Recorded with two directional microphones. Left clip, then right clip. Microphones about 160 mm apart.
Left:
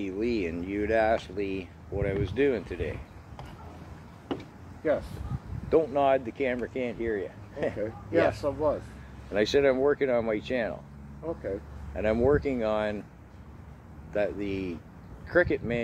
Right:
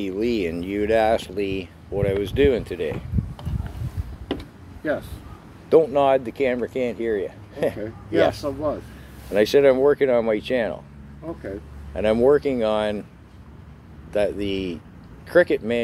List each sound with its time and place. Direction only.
0.0 s speech: 45° right (ahead or behind)
4.8 s speech: 5° right (ahead or behind)
5.7 s speech: 45° right (ahead or behind)
8.4 s speech: 5° right (ahead or behind)
9.3 s speech: 40° right (ahead or behind)
11.9 s speech: 40° right (ahead or behind)
14.1 s speech: 45° right (ahead or behind)